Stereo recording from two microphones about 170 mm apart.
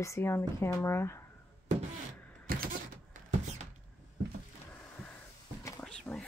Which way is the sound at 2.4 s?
55° right (ahead or behind).